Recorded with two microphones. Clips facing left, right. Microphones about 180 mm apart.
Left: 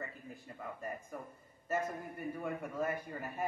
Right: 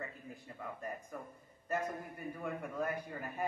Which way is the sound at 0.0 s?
Centre (ahead or behind).